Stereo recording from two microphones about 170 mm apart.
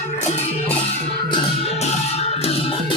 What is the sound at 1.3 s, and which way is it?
Music, 30° left (ahead or behind).